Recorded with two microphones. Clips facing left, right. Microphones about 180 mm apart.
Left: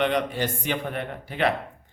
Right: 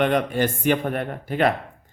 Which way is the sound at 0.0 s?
50° right (ahead or behind).